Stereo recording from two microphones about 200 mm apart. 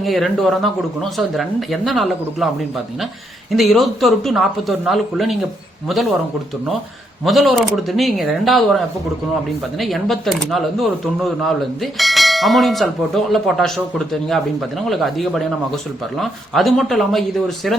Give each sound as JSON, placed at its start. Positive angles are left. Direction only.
{"t": 0.0, "sound": "speech", "side_deg": 0}
{"t": 3.5, "sound": "speech", "side_deg": 0}
{"t": 7.3, "sound": "speech", "side_deg": 0}